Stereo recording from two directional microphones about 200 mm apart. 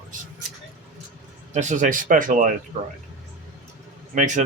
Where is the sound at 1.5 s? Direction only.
35° right (ahead or behind).